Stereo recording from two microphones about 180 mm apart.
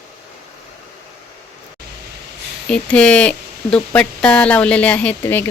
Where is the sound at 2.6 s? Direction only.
5° left (ahead or behind).